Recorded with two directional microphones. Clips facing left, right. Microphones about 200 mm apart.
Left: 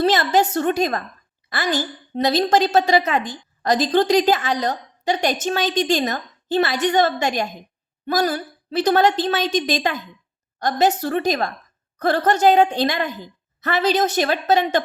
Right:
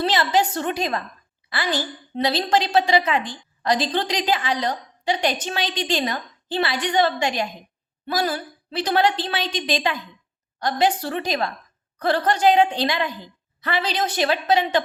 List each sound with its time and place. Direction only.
0.0 s a woman's voice: 45° left (ahead or behind)